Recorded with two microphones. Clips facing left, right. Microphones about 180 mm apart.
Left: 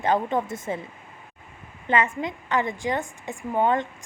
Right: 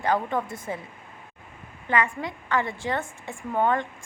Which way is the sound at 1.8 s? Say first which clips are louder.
Left 2 dB; 20° left (ahead or behind).